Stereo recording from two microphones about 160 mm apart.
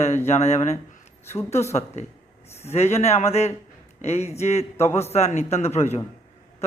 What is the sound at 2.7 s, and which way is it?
A man's voice, 45° left (ahead or behind).